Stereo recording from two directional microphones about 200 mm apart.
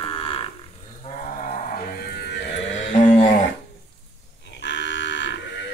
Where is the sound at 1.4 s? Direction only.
45° left (ahead or behind).